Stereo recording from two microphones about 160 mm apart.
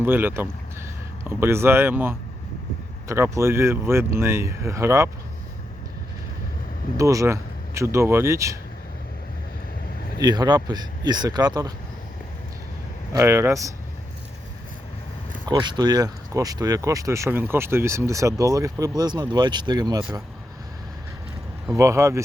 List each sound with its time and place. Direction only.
0.0 s speech: 10° right (ahead or behind)
6.9 s speech: 20° right (ahead or behind)
10.2 s speech: 25° right (ahead or behind)
13.1 s speech: 15° right (ahead or behind)
15.4 s speech: 25° right (ahead or behind)
21.7 s speech: 20° right (ahead or behind)